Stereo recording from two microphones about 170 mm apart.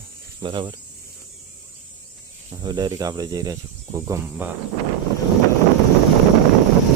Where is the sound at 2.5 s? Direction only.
25° right (ahead or behind).